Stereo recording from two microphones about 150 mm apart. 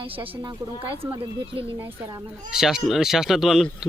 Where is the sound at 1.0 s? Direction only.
40° right (ahead or behind).